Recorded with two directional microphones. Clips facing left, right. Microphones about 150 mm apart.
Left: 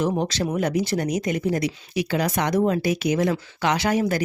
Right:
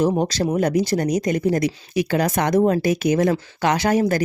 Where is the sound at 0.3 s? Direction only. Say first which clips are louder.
Right 4 dB; 40° right (ahead or behind).